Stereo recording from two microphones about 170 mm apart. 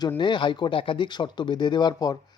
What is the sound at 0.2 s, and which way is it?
Speech, 25° left (ahead or behind).